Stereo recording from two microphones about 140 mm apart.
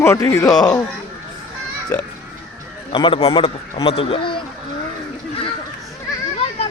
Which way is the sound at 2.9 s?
40° left (ahead or behind).